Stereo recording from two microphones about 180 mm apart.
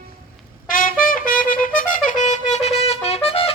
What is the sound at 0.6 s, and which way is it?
Trumpet, 50° left (ahead or behind).